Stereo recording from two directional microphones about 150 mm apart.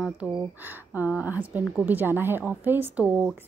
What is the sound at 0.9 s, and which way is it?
A woman's voice, 10° right (ahead or behind).